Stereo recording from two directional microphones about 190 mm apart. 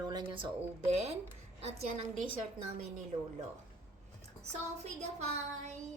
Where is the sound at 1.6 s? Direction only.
35° right (ahead or behind).